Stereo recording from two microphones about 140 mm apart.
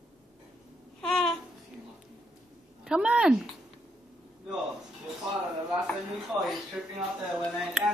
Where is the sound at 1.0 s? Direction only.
5° left (ahead or behind).